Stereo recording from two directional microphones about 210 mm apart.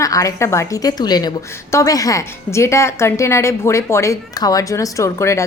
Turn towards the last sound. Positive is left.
turn(degrees=15)  # may be behind; listen again after turning